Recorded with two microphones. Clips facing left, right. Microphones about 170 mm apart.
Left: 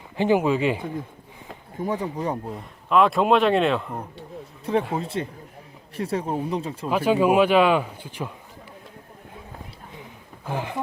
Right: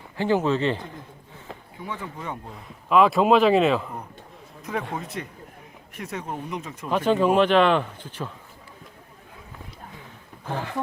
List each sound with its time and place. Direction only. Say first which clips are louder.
0.2 s speech: left 2 dB; 15° left (ahead or behind)
1.8 s speech: left 9 dB; 40° left (ahead or behind)
2.5 s speech: even; centre (ahead or behind)
4.6 s speech: left 6 dB; 30° left (ahead or behind)
6.8 s speech: left 1 dB; 10° left (ahead or behind)
10.4 s a sound: left 1 dB; 15° left (ahead or behind)